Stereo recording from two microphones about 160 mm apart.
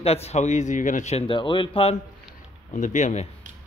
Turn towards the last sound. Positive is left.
turn(degrees=50)  # may be behind; listen again after turning